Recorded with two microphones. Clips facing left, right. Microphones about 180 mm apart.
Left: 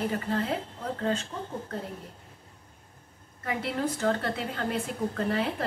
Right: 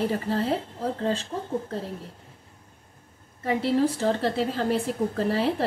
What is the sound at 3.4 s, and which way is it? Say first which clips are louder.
A woman's voice: right 7 dB; 30° right (ahead or behind).